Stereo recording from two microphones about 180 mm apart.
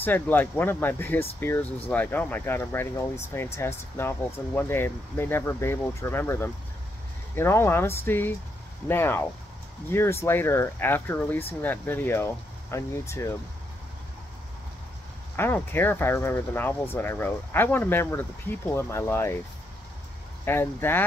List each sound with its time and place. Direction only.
0.0 s speech: 10° left (ahead or behind)
15.3 s speech: 10° left (ahead or behind)
20.4 s speech: 10° left (ahead or behind)